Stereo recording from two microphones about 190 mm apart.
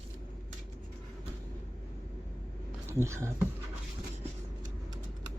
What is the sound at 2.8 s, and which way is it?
Speech, 15° right (ahead or behind).